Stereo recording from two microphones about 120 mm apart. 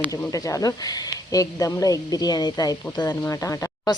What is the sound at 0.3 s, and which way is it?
Speech, 30° left (ahead or behind).